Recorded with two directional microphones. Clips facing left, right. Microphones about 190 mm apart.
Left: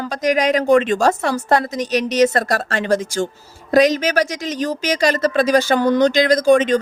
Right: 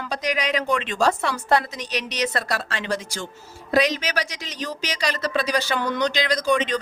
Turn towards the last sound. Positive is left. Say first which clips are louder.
# left 9 dB
turn(degrees=45)  # may be behind; listen again after turning